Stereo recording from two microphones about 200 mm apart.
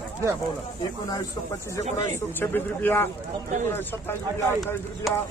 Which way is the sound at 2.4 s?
10° left (ahead or behind).